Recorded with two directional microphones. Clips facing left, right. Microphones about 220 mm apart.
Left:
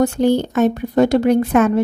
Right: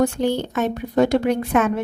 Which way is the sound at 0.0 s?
40° left (ahead or behind).